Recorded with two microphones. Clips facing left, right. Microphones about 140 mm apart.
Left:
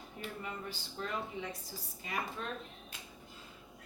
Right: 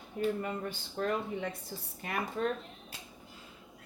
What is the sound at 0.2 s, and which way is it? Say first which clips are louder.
Speech: right 10 dB; 50° right (ahead or behind).